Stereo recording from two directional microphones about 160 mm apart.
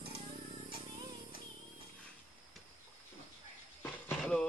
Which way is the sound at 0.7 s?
30° right (ahead or behind).